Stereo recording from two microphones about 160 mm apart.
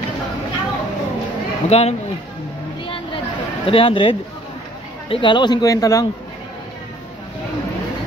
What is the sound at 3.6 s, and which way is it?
Speech, 35° left (ahead or behind).